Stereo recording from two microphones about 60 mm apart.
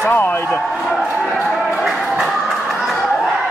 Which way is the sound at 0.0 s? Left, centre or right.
Left.